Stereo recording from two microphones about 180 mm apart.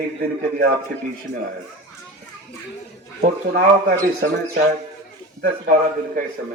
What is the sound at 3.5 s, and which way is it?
A man's voice, 60° right (ahead or behind).